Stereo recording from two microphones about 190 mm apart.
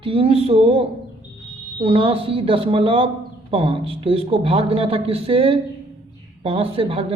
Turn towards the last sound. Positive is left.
turn(degrees=-30)  # may be behind; listen again after turning